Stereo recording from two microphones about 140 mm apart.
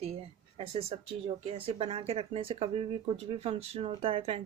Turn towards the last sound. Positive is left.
turn(degrees=-40)  # may be behind; listen again after turning